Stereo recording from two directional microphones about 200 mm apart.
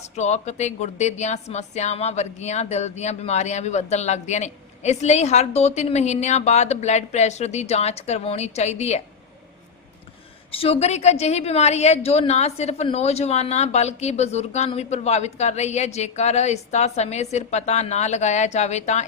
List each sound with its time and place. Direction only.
0.0 s a woman's voice: 35° left (ahead or behind)
10.5 s a woman's voice: 30° left (ahead or behind)